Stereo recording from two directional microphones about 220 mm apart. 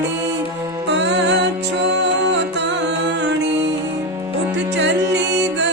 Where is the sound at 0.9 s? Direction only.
55° right (ahead or behind).